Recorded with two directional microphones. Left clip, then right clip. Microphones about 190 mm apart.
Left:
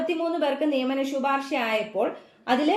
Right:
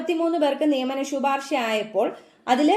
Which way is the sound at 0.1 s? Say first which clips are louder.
Right 3 dB; 45° right (ahead or behind).